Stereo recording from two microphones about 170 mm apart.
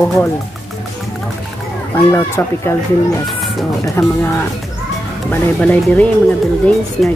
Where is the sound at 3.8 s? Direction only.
15° left (ahead or behind).